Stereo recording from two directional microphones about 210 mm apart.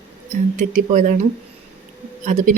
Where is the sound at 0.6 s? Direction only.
35° right (ahead or behind).